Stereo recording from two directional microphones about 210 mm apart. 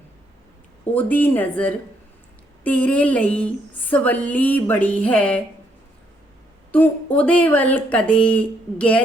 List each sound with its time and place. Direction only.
0.9 s speech: 10° left (ahead or behind)
6.7 s speech: 10° left (ahead or behind)